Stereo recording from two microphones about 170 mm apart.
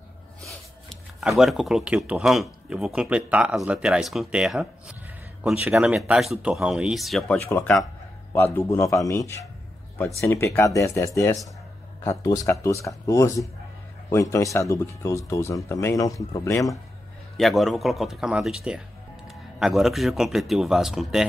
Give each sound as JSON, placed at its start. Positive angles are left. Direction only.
{"t": 0.4, "sound": "speech", "side_deg": 0}
{"t": 7.3, "sound": "a man's voice", "side_deg": 10}
{"t": 17.4, "sound": "speech", "side_deg": 0}